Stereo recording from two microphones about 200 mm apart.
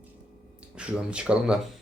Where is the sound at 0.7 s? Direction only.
5° right (ahead or behind).